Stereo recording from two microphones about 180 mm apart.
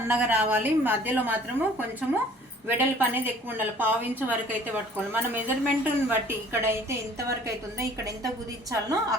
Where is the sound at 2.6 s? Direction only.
10° right (ahead or behind).